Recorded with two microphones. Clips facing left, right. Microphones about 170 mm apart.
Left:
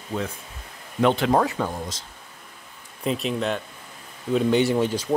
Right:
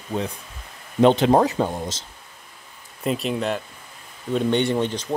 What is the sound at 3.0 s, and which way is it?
Speech, centre (ahead or behind).